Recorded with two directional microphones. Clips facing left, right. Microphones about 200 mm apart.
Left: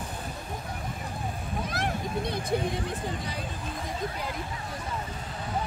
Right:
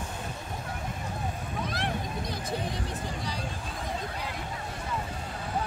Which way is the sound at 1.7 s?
45° left (ahead or behind).